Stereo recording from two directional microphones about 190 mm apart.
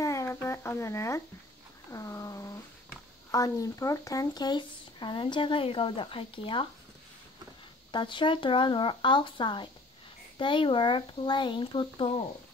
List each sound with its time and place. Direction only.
0.0 s a sound: 15° left (ahead or behind)
3.3 s speech: 20° left (ahead or behind)
7.9 s speech: 25° left (ahead or behind)